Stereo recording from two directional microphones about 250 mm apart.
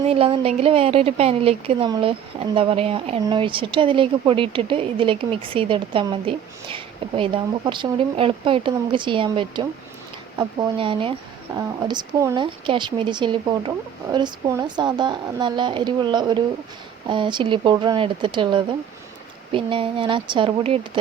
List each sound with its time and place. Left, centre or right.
0.0 s a woman's voice: right